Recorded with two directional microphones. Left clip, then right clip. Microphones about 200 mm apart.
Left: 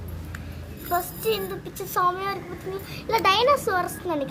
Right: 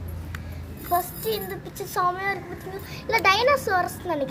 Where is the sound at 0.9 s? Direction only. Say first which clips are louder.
Even; centre (ahead or behind).